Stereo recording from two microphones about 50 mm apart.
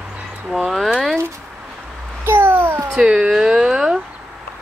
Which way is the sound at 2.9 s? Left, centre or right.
Centre.